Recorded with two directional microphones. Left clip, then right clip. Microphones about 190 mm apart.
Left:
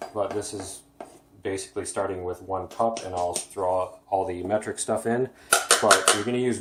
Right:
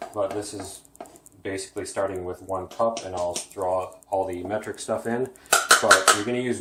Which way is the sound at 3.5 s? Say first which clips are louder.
Left 1 dB; 40° left (ahead or behind).